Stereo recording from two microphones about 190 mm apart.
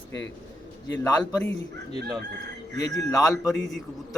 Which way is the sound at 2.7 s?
20° left (ahead or behind).